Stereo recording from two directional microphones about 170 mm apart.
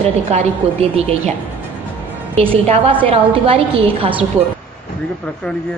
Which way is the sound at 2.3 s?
35° right (ahead or behind).